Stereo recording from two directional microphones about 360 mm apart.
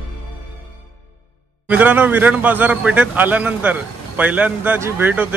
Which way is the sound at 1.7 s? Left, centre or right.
Centre.